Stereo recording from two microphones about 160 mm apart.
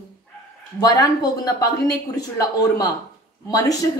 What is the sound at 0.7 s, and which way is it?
Speech, 25° left (ahead or behind).